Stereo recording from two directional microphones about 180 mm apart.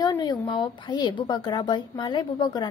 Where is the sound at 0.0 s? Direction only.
20° left (ahead or behind).